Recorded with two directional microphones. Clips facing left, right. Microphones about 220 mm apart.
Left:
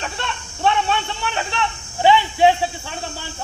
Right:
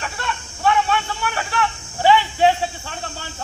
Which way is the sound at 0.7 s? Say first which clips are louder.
Right 1 dB; 25° left (ahead or behind).